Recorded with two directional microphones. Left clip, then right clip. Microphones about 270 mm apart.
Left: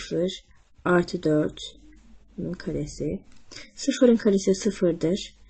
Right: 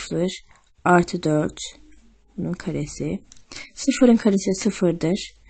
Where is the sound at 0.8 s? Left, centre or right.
Right.